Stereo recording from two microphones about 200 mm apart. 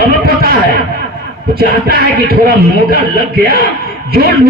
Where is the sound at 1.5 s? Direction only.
50° right (ahead or behind).